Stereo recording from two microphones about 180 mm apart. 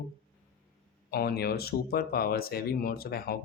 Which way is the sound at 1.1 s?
60° left (ahead or behind).